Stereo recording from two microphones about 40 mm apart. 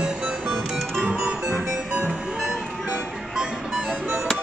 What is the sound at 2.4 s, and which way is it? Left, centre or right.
Music, centre.